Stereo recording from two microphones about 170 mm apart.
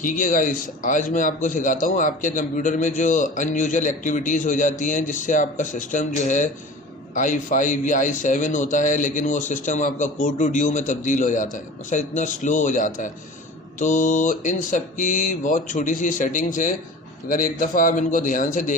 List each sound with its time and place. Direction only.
0.0 s a man's voice: 50° left (ahead or behind)